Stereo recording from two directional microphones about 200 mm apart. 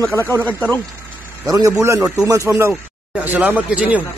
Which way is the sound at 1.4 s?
15° right (ahead or behind).